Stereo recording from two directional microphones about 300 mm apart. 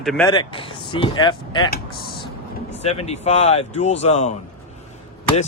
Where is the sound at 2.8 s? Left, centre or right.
Left.